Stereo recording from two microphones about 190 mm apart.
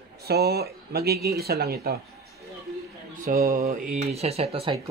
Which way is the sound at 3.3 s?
45° right (ahead or behind).